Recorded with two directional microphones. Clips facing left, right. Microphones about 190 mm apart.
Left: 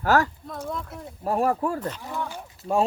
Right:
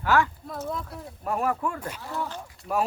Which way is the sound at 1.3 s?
30° left (ahead or behind).